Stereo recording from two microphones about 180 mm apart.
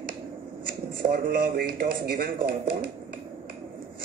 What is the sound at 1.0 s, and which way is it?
Speech, 50° right (ahead or behind).